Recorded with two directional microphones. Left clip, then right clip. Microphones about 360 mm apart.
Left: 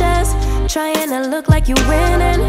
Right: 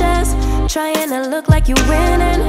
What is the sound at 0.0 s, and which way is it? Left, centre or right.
Music, centre.